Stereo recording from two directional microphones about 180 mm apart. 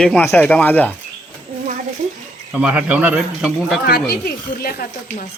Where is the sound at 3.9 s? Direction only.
60° left (ahead or behind).